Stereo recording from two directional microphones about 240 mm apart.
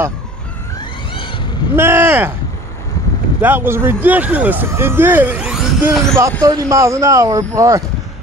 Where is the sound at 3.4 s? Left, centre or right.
Centre.